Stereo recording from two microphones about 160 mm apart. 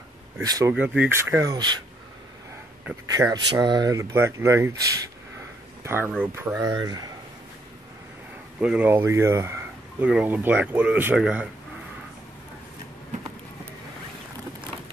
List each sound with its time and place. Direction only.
0.4 s speech: 20° right (ahead or behind)
0.7 s speech: 10° right (ahead or behind); by 1.8 s 25° right (ahead or behind)
3.1 s speech: 25° right (ahead or behind)
6.7 s speech: 25° right (ahead or behind)
8.5 s speech: 10° right (ahead or behind)